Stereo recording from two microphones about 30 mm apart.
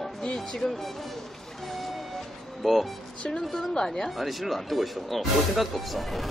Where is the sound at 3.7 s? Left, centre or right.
Left.